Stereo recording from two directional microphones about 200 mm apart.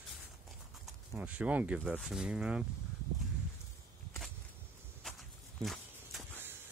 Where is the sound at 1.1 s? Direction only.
5° right (ahead or behind).